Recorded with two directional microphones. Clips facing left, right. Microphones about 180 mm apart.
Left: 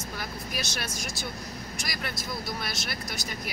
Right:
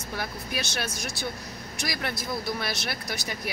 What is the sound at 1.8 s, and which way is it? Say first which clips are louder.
Speech: right 6 dB; 60° right (ahead or behind).